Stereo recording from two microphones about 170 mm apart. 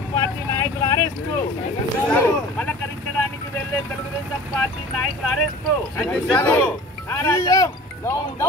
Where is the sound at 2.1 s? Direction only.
10° left (ahead or behind).